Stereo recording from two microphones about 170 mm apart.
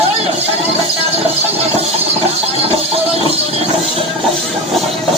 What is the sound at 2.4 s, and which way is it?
Music, 35° right (ahead or behind).